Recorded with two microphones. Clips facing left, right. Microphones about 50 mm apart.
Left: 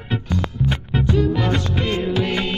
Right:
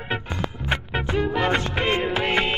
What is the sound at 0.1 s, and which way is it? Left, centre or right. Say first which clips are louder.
Music: left 4 dB; right.